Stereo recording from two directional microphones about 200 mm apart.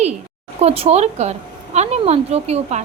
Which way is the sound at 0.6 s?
30° right (ahead or behind).